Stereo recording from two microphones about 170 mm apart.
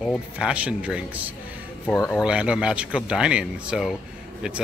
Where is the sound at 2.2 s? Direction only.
5° right (ahead or behind).